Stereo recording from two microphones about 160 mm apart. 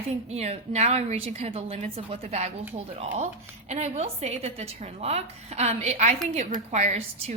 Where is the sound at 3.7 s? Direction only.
45° right (ahead or behind).